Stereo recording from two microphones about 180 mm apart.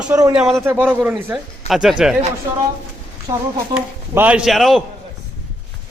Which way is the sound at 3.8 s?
10° right (ahead or behind).